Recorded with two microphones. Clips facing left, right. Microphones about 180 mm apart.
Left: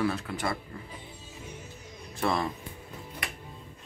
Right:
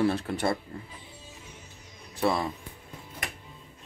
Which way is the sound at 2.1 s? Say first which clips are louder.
Right 2 dB; 10° right (ahead or behind).